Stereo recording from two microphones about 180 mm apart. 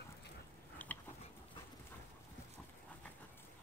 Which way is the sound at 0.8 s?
10° left (ahead or behind).